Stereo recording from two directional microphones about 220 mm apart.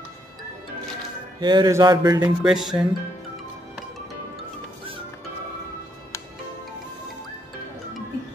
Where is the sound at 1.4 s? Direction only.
20° right (ahead or behind).